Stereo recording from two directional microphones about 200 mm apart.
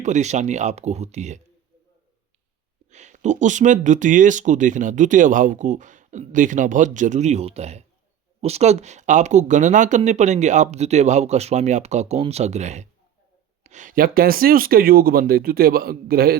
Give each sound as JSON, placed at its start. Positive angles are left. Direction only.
{"t": 0.0, "sound": "speech", "side_deg": -35}
{"t": 2.9, "sound": "speech", "side_deg": -35}